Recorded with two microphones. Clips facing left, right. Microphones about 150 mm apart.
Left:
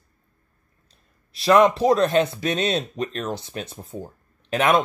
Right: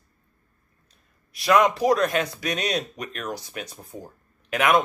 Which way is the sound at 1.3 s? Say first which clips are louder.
Left 3 dB; 25° left (ahead or behind).